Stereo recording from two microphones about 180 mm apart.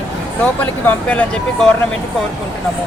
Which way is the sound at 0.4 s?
10° left (ahead or behind).